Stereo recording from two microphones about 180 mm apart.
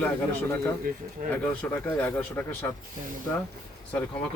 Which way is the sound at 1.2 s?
45° right (ahead or behind).